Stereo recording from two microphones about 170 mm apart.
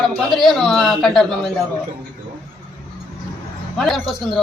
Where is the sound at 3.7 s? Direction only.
5° left (ahead or behind).